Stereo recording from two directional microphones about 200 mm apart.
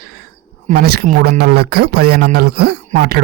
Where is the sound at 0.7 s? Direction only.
50° right (ahead or behind).